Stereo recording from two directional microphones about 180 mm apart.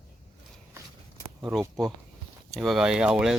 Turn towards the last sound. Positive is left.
turn(degrees=-5)  # may be behind; listen again after turning